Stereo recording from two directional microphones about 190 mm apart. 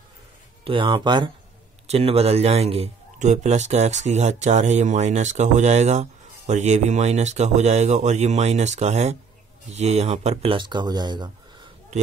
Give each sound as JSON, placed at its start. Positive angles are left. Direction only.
{"t": 0.7, "sound": "a man's voice", "side_deg": -25}